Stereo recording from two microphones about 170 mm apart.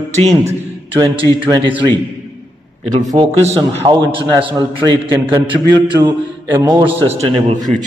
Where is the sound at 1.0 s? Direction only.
25° right (ahead or behind).